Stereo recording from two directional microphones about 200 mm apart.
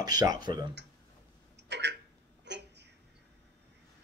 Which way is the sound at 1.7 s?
60° right (ahead or behind).